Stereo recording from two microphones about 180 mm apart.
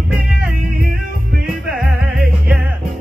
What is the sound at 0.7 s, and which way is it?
Music, 55° right (ahead or behind).